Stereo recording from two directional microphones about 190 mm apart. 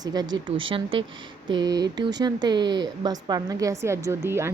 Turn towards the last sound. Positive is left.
turn(degrees=-15)  # may be behind; listen again after turning